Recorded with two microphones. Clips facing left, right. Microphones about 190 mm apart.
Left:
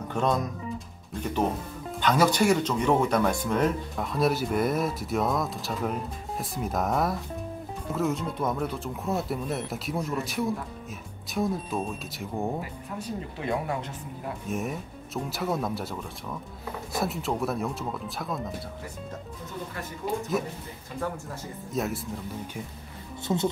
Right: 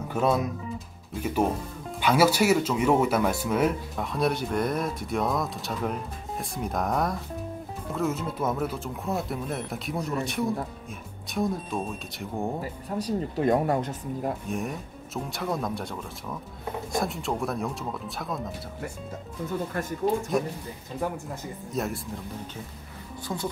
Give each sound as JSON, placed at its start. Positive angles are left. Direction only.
{"t": 0.1, "sound": "speech", "side_deg": -5}
{"t": 12.9, "sound": "speech", "side_deg": -40}
{"t": 14.5, "sound": "speech", "side_deg": 0}
{"t": 20.4, "sound": "speech", "side_deg": 5}
{"t": 21.7, "sound": "speech", "side_deg": 0}
{"t": 23.2, "sound": "a woman's voice", "side_deg": 25}